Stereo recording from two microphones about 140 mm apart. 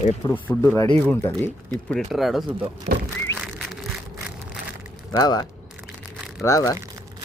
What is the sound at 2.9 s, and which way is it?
Speech, 90° right.